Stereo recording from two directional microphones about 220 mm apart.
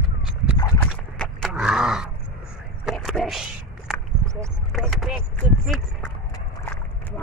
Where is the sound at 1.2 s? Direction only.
Centre (ahead or behind).